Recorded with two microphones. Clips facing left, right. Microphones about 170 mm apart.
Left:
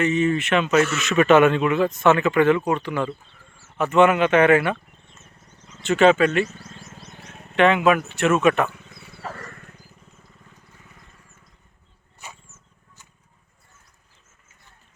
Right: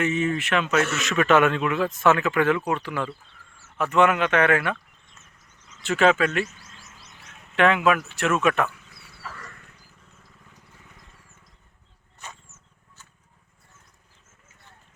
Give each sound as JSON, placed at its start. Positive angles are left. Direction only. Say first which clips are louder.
{"t": 0.0, "sound": "speech", "louder": "left 4 dB", "side_deg": -5}
{"t": 5.8, "sound": "speech", "louder": "left 4 dB", "side_deg": 0}
{"t": 6.5, "sound": "bird", "louder": "left 8 dB", "side_deg": 35}
{"t": 7.5, "sound": "speech", "louder": "left 3 dB", "side_deg": 0}
{"t": 9.1, "sound": "wild animals", "louder": "left 6 dB", "side_deg": 50}
{"t": 12.2, "sound": "a sound", "louder": "even", "side_deg": 10}